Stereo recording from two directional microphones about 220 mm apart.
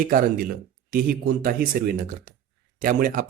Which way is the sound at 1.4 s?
45° right (ahead or behind).